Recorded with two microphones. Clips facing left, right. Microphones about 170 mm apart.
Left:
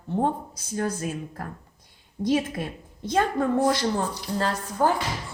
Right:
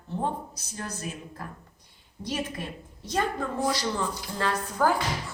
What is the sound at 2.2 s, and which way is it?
Speech, 40° left (ahead or behind).